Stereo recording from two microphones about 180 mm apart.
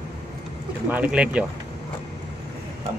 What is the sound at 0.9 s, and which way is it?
Speech, 10° right (ahead or behind).